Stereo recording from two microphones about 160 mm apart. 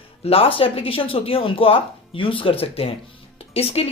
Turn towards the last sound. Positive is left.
turn(degrees=40)  # may be behind; listen again after turning